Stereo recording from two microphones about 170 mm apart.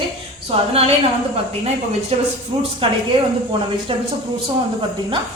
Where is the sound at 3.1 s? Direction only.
30° right (ahead or behind).